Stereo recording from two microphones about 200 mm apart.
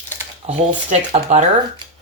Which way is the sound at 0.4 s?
35° right (ahead or behind).